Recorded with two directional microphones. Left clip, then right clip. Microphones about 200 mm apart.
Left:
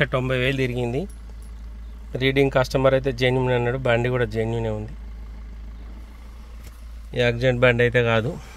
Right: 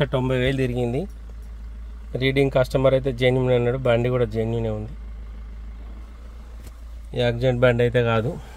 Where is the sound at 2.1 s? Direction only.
5° right (ahead or behind).